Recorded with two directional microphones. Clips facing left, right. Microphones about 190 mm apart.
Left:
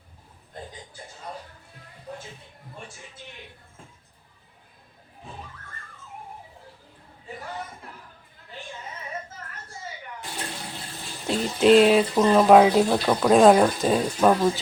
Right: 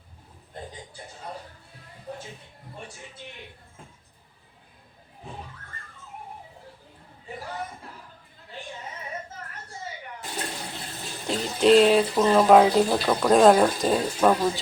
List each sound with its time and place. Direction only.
11.3 s speech: centre (ahead or behind)